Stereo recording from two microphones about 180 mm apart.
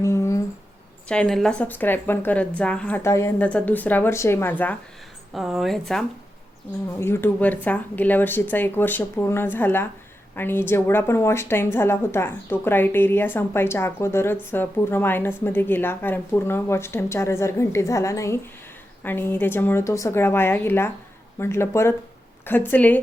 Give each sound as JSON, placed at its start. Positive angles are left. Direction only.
{"t": 0.0, "sound": "a sound", "side_deg": 15}
{"t": 1.0, "sound": "a woman's voice", "side_deg": 5}
{"t": 5.3, "sound": "a woman's voice", "side_deg": 0}
{"t": 7.0, "sound": "a woman's voice", "side_deg": 10}